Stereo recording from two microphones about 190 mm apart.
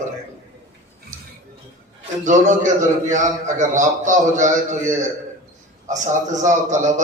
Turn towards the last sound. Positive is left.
turn(degrees=-40)  # may be behind; listen again after turning